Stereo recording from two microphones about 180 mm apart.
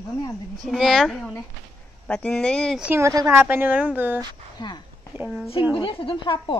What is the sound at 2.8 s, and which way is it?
A woman's voice, 15° right (ahead or behind).